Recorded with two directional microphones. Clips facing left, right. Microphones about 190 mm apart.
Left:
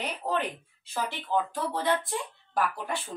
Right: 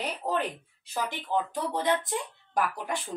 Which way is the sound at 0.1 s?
10° right (ahead or behind).